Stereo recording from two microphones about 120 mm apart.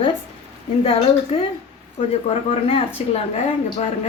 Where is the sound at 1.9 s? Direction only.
55° left (ahead or behind).